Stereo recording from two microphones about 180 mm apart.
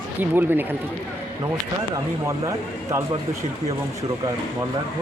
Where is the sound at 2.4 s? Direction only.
15° right (ahead or behind).